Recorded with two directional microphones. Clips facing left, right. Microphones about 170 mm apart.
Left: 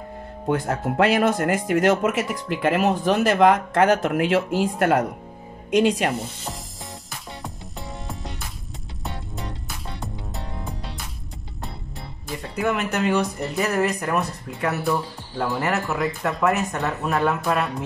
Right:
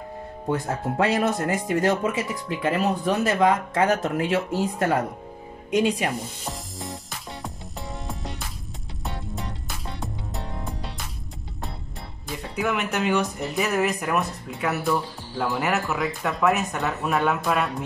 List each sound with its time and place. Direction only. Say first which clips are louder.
0.5 s speech: left 3 dB; 75° left (ahead or behind)
1.2 s speech: left 3 dB; 65° left (ahead or behind)
6.4 s music: right 1 dB; centre (ahead or behind)
8.1 s music: even; centre (ahead or behind)
12.5 s speech: left 2 dB; centre (ahead or behind)